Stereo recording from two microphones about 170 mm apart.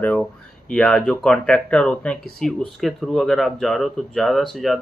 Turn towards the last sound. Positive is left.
turn(degrees=0)  # may be behind; listen again after turning